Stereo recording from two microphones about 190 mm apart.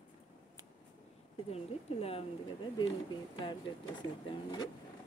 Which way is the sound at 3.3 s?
25° left (ahead or behind).